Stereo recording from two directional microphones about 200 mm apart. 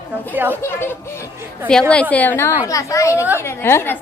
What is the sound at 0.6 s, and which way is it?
A woman's voice, 10° left (ahead or behind).